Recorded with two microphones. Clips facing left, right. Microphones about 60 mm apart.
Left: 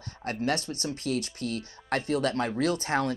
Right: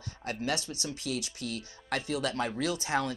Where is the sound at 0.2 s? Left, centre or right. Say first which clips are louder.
Left 4 dB; left.